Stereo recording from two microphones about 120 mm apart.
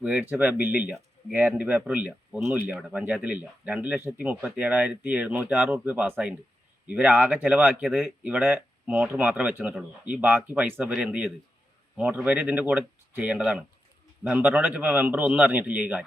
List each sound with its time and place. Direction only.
0.0 s speech: 10° right (ahead or behind)